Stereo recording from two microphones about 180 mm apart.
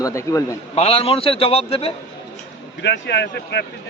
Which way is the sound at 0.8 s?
35° left (ahead or behind).